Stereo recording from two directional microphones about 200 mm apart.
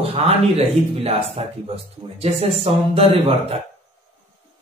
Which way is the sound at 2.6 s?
30° right (ahead or behind).